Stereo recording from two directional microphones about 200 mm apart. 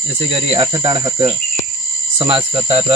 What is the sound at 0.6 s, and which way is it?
Speech, 20° right (ahead or behind).